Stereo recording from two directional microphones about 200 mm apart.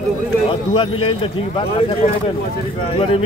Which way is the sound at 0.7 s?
25° left (ahead or behind).